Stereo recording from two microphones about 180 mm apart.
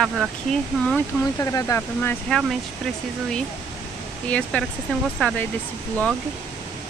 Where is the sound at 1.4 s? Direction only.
15° left (ahead or behind).